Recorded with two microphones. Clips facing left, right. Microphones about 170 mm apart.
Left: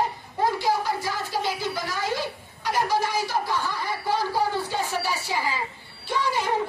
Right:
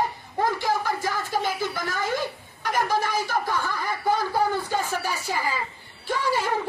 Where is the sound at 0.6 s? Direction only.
50° right (ahead or behind).